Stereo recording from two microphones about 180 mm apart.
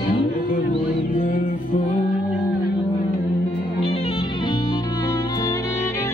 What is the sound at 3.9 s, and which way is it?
Music, 30° left (ahead or behind).